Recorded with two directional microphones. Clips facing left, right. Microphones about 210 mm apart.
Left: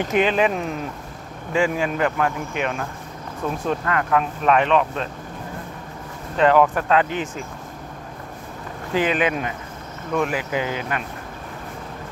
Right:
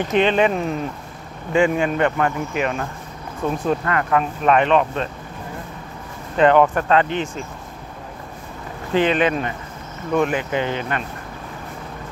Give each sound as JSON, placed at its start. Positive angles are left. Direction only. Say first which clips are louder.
{"t": 0.1, "sound": "speech", "louder": "right 2 dB", "side_deg": 5}
{"t": 6.3, "sound": "speech", "louder": "right 2 dB", "side_deg": 0}
{"t": 8.9, "sound": "speech", "louder": "right 3 dB", "side_deg": 5}